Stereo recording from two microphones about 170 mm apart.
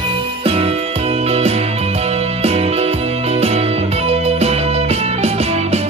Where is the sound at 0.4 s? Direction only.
35° right (ahead or behind).